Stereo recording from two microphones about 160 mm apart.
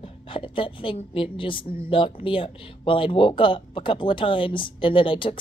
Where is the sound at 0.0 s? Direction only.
35° left (ahead or behind).